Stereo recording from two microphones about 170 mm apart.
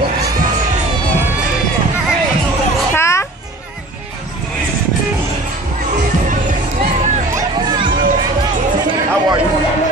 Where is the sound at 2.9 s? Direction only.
15° left (ahead or behind).